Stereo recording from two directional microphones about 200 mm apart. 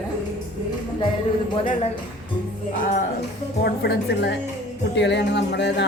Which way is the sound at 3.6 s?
55° left (ahead or behind).